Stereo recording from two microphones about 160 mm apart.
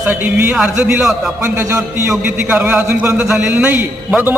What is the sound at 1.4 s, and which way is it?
A man's voice, 15° right (ahead or behind).